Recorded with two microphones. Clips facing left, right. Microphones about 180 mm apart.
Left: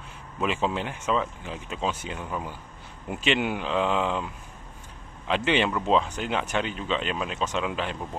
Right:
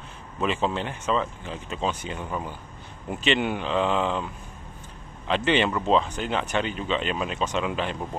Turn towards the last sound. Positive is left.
turn(degrees=0)  # may be behind; listen again after turning